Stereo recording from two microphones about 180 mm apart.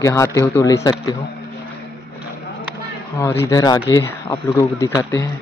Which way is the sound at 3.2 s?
15° left (ahead or behind).